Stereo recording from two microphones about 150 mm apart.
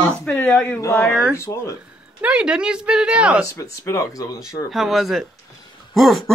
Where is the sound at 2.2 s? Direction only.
5° right (ahead or behind).